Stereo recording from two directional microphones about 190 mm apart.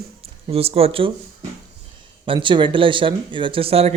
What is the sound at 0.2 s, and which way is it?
Speech, 30° right (ahead or behind).